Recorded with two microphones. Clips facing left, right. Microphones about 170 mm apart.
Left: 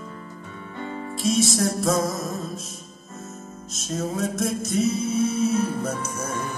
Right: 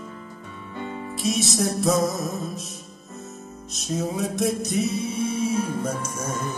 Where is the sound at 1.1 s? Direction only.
Centre (ahead or behind).